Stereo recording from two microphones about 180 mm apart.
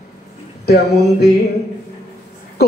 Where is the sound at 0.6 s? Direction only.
65° left (ahead or behind).